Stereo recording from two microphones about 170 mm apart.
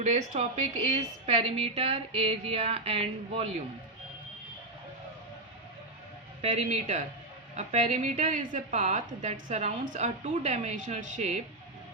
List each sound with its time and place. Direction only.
0.0 s a woman's voice: 40° right (ahead or behind)
6.4 s a woman's voice: 40° right (ahead or behind)